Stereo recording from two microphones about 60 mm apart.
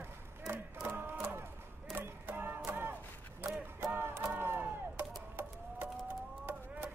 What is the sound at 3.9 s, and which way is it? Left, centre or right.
Music, right.